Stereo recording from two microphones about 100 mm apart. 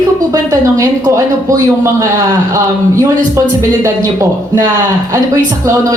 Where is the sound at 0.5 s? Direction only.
35° right (ahead or behind).